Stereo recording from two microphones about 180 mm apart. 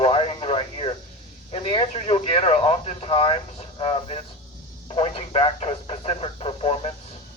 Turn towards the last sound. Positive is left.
turn(degrees=35)  # may be behind; listen again after turning